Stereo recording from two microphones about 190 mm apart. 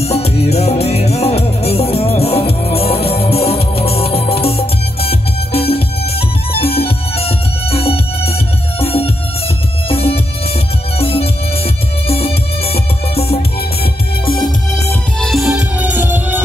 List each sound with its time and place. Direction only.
0.0 s music: 35° left (ahead or behind)
14.4 s music: 15° left (ahead or behind)
15.1 s music: centre (ahead or behind)